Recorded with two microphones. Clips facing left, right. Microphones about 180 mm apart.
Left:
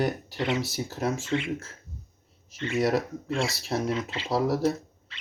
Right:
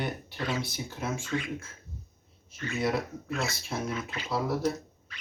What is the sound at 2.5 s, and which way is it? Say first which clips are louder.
Speech: left 5 dB; 25° left (ahead or behind).